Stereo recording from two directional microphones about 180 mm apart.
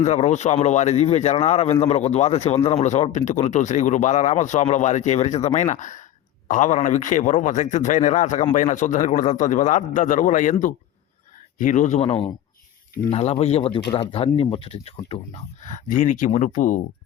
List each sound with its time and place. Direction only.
0.0 s a man's voice: 40° left (ahead or behind)